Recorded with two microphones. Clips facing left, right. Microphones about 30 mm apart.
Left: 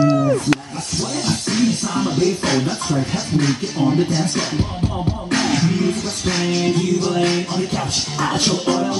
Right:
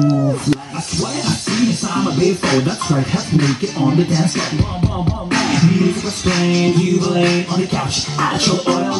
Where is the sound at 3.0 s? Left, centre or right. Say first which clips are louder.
Right 3 dB; right.